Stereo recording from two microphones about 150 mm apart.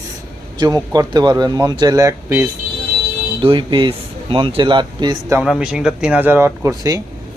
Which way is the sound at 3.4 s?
35° right (ahead or behind).